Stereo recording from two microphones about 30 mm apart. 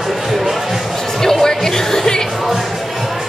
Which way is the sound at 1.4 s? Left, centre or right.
Centre.